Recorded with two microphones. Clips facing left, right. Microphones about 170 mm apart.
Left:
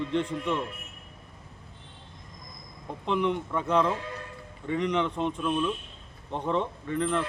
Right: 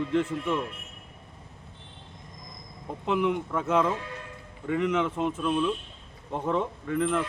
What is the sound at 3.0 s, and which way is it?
Speech, 5° right (ahead or behind).